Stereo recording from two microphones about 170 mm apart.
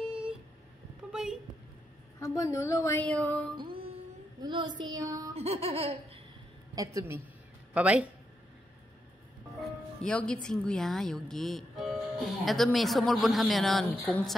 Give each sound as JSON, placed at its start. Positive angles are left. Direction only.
{"t": 0.0, "sound": "a sound", "side_deg": -5}
{"t": 2.1, "sound": "a woman's voice", "side_deg": 20}
{"t": 4.4, "sound": "child singing", "side_deg": -25}
{"t": 5.3, "sound": "laughter", "side_deg": -40}
{"t": 6.7, "sound": "a woman's voice", "side_deg": -20}
{"t": 7.7, "sound": "speech", "side_deg": -5}
{"t": 9.6, "sound": "speech", "side_deg": 5}